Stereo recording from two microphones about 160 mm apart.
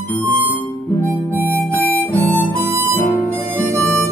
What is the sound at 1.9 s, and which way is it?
Harmonica, 10° left (ahead or behind).